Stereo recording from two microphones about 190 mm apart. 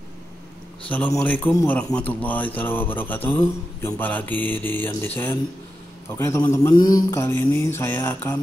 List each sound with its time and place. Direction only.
0.8 s speech: 10° left (ahead or behind)